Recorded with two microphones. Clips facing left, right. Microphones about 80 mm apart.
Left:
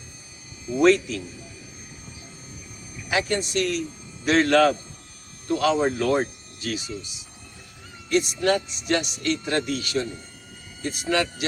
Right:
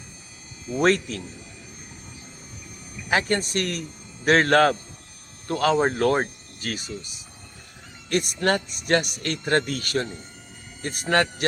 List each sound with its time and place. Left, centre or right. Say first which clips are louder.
0.8 s speech: left 3 dB; right
3.1 s speech: right 1 dB; right